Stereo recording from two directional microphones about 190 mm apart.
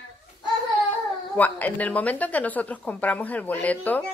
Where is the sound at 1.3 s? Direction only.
10° left (ahead or behind).